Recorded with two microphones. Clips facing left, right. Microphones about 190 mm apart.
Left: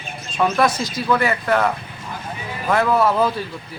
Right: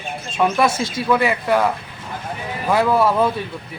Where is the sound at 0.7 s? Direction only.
25° right (ahead or behind); by 3.3 s centre (ahead or behind).